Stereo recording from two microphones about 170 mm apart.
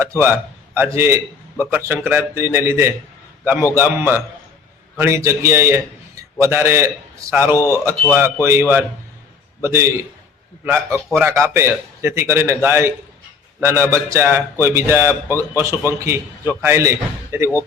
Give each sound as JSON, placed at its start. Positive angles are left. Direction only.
{"t": 0.0, "sound": "a man's voice", "side_deg": -15}
{"t": 9.6, "sound": "a man's voice", "side_deg": -15}